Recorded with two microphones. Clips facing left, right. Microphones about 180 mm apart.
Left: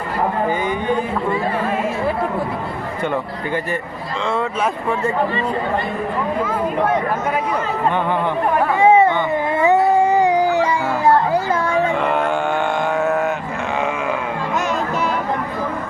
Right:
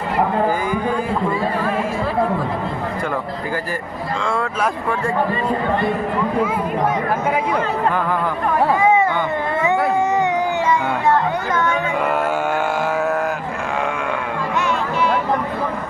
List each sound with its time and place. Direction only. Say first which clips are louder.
4.6 s speech: left 1 dB; 5° left (ahead or behind)
8.8 s a sound: left 7 dB; 30° left (ahead or behind)
9.6 s music: left 4 dB; 35° left (ahead or behind)
14.5 s music: even; 40° left (ahead or behind)